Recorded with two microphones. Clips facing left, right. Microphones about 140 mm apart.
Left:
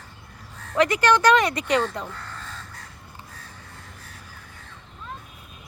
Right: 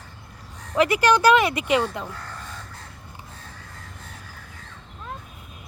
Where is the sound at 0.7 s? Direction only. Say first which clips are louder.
Right 1 dB; 10° right (ahead or behind).